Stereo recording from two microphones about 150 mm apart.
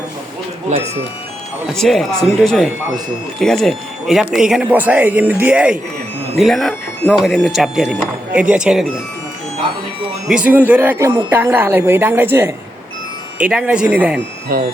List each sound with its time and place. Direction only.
0.7 s speech: 50° right (ahead or behind)
1.7 s speech: centre (ahead or behind)
10.2 s speech: 10° right (ahead or behind)
14.5 s speech: 80° right